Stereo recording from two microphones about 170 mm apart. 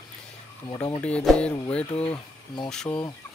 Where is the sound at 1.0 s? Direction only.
5° left (ahead or behind).